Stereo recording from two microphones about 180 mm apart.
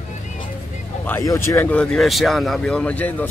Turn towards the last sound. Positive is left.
turn(degrees=10)  # may be behind; listen again after turning